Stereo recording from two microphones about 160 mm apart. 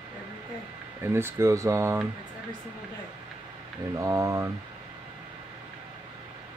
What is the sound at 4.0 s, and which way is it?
Speech, 20° right (ahead or behind).